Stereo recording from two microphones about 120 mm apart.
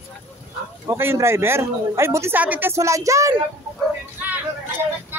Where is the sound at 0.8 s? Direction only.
25° right (ahead or behind).